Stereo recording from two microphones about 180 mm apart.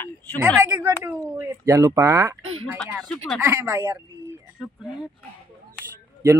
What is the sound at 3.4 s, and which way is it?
Speech, 20° right (ahead or behind).